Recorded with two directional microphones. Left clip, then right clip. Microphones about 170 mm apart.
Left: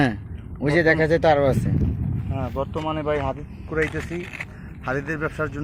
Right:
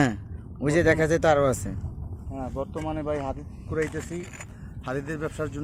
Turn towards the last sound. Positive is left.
turn(degrees=10)  # may be behind; listen again after turning